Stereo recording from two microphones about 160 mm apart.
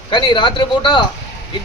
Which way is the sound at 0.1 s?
30° left (ahead or behind).